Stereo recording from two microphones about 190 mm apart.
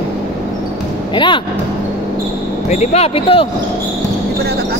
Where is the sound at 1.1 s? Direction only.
25° left (ahead or behind).